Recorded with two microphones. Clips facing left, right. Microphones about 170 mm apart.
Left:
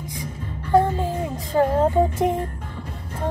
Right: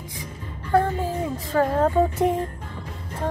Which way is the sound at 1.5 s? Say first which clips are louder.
Left 2 dB; 20° left (ahead or behind).